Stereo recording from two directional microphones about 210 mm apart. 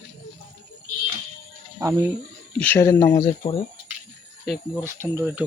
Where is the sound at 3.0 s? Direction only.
25° left (ahead or behind).